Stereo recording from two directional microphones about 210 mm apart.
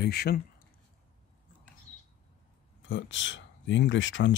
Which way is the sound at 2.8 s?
60° left (ahead or behind).